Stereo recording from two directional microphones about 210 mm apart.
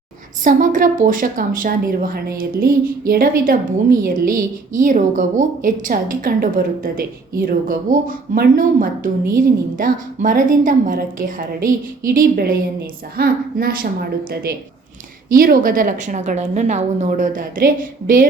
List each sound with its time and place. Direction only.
0.4 s a woman's voice: 40° right (ahead or behind)
15.3 s a woman's voice: 45° right (ahead or behind)